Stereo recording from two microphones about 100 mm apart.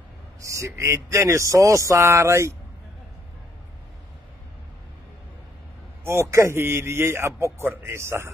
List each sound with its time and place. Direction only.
0.4 s speech: 30° right (ahead or behind)
6.0 s a man's voice: 30° right (ahead or behind)